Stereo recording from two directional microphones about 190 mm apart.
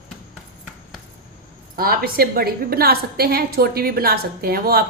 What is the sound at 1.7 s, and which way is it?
A woman's voice, 50° right (ahead or behind).